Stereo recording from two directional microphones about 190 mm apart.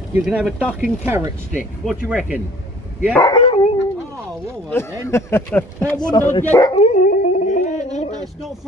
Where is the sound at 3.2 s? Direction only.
25° left (ahead or behind).